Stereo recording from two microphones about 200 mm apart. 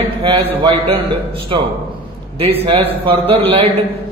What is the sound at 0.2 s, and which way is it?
Speech, 25° right (ahead or behind).